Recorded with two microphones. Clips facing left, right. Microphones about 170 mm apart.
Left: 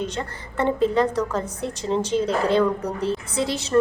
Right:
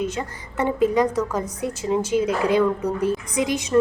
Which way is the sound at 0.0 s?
10° right (ahead or behind).